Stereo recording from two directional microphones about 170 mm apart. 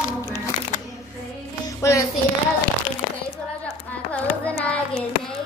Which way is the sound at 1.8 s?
20° left (ahead or behind).